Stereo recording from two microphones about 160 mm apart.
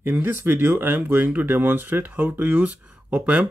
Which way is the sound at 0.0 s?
15° right (ahead or behind).